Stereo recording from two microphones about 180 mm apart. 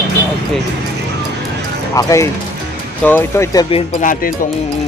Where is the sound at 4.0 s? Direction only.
50° left (ahead or behind).